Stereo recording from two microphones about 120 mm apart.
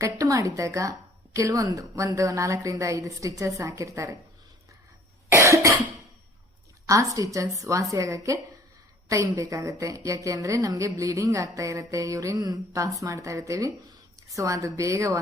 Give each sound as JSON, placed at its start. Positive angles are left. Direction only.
{"t": 0.0, "sound": "a woman's voice", "side_deg": -25}
{"t": 5.3, "sound": "a woman's voice", "side_deg": -25}
{"t": 6.8, "sound": "a woman's voice", "side_deg": -25}